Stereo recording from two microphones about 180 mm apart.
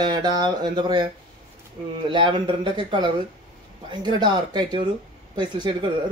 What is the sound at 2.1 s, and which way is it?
Speech, 25° right (ahead or behind).